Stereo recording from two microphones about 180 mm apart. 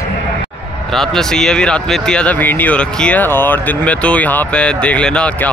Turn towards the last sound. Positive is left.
turn(degrees=5)  # may be behind; listen again after turning